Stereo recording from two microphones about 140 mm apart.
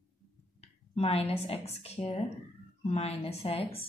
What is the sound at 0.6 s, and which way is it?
A woman's voice, 45° left (ahead or behind).